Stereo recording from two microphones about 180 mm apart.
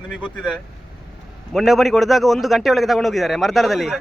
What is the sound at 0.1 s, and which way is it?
Speech, 5° left (ahead or behind).